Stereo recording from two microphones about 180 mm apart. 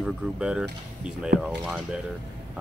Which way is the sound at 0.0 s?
5° right (ahead or behind).